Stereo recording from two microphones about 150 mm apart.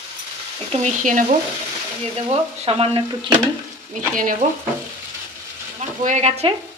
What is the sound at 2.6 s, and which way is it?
Speech, 40° right (ahead or behind).